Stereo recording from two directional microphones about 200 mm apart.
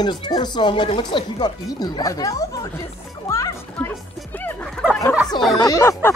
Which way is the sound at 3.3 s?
15° left (ahead or behind).